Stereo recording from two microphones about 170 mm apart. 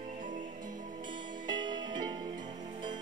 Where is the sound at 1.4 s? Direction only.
25° right (ahead or behind).